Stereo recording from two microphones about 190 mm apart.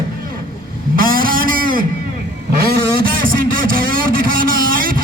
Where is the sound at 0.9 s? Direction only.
50° right (ahead or behind).